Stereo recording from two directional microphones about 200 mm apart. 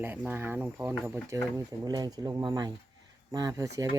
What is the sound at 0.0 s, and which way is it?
Speech, 10° right (ahead or behind).